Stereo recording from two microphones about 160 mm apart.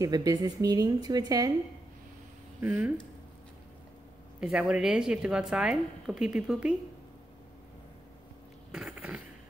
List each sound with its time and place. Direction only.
0.0 s a woman's voice: 20° right (ahead or behind)
2.6 s speech: 10° right (ahead or behind)
4.4 s speech: 5° right (ahead or behind)
8.7 s a sound: 5° right (ahead or behind)